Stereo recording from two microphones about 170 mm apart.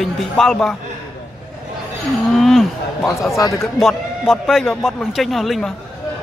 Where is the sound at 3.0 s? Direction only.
15° left (ahead or behind).